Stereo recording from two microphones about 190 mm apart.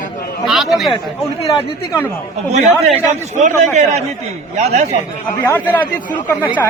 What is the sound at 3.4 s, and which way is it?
Speech, 40° right (ahead or behind).